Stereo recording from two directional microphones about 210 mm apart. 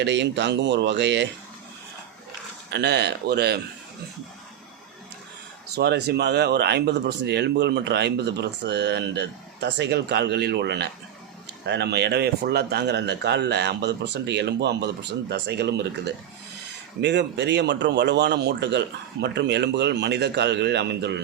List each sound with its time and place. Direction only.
0.0 s a man's voice: 55° right (ahead or behind)
2.6 s speech: 55° right (ahead or behind)
5.7 s a man's voice: 50° right (ahead or behind)